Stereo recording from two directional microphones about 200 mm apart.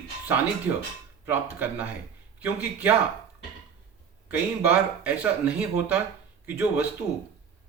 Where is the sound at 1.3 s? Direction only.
10° right (ahead or behind).